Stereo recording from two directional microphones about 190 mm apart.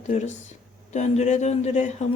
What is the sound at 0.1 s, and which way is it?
Speech, 35° left (ahead or behind).